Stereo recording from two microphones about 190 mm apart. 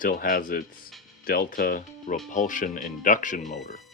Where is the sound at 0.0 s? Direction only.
50° left (ahead or behind).